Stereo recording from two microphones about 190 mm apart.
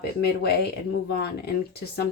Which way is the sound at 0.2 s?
60° left (ahead or behind).